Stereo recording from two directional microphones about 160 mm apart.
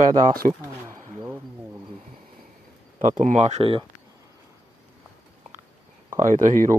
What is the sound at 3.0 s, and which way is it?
Speech, 50° right (ahead or behind).